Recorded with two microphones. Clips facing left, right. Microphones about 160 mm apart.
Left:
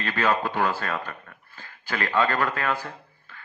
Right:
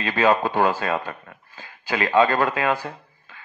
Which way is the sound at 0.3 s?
40° right (ahead or behind).